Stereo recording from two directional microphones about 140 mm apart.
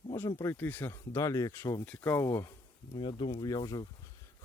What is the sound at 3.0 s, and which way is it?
Speech, 35° left (ahead or behind).